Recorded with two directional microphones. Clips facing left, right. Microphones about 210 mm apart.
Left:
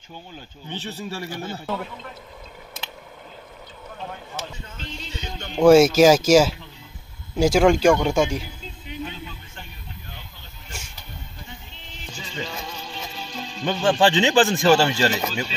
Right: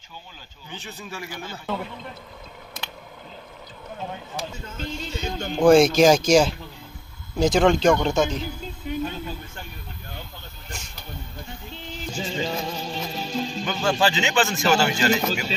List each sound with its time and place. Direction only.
0.7 s speech: 35° left (ahead or behind)
4.6 s speech: 45° right (ahead or behind)
5.6 s a man's voice: 5° left (ahead or behind)
8.8 s a sound: 45° right (ahead or behind)
12.2 s music: 35° right (ahead or behind)
13.7 s speech: 30° left (ahead or behind)